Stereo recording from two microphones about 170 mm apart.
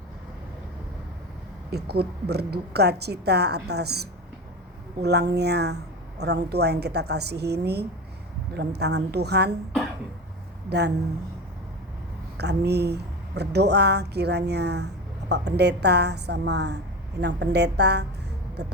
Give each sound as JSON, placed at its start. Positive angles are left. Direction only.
{"t": 1.7, "sound": "speech", "side_deg": -70}
{"t": 10.7, "sound": "speech", "side_deg": -80}
{"t": 12.4, "sound": "a woman's voice", "side_deg": -75}